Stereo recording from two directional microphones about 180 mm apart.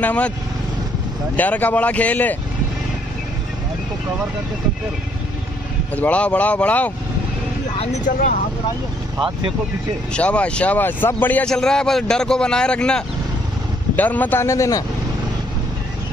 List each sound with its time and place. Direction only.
0.0 s speech: 10° left (ahead or behind)
1.3 s speech: 10° left (ahead or behind)
5.9 s speech: 5° left (ahead or behind)
7.8 s speech: 40° left (ahead or behind)
10.1 s a man's voice: 5° left (ahead or behind)